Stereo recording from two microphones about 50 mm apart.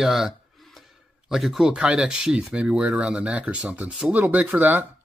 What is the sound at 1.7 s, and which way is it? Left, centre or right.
Speech, right.